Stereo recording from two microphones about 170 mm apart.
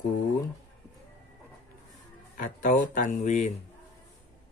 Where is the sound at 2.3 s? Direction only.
50° left (ahead or behind).